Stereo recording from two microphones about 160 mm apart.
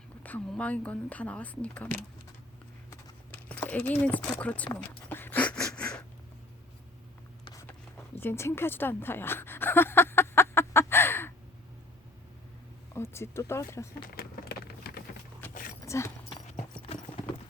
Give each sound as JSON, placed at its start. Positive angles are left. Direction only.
{"t": 0.2, "sound": "speech", "side_deg": 10}
{"t": 3.3, "sound": "speech", "side_deg": 10}
{"t": 4.7, "sound": "dog", "side_deg": 15}
{"t": 5.7, "sound": "a sound", "side_deg": 5}
{"t": 8.2, "sound": "a sound", "side_deg": 15}
{"t": 12.9, "sound": "speech", "side_deg": 15}
{"t": 14.2, "sound": "a sound", "side_deg": 70}
{"t": 15.4, "sound": "dog", "side_deg": 10}
{"t": 15.9, "sound": "speech", "side_deg": 15}